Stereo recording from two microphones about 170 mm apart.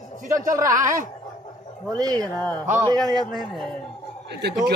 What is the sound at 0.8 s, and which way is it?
Speech, 50° right (ahead or behind).